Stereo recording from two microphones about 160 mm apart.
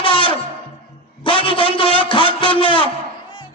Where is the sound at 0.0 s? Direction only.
30° left (ahead or behind).